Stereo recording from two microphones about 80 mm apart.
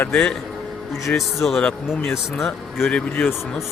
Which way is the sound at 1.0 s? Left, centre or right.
Centre.